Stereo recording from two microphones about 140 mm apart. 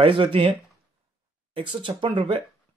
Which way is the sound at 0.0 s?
40° right (ahead or behind).